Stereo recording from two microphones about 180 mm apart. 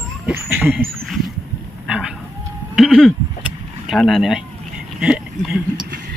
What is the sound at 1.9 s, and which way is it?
Speech, 5° right (ahead or behind).